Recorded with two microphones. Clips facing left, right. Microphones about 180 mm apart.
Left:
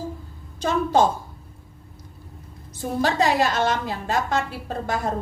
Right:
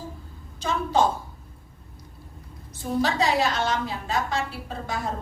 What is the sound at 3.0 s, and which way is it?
A woman's voice, 50° left (ahead or behind).